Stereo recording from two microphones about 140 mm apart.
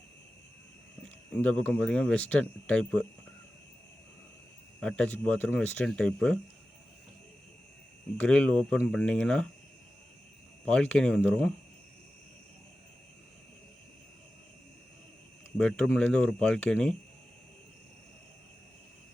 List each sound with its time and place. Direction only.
1.0 s speech: 10° left (ahead or behind)
4.8 s speech: 5° left (ahead or behind)
8.2 s speech: 10° left (ahead or behind)
10.7 s speech: 10° left (ahead or behind)
15.5 s speech: 5° left (ahead or behind)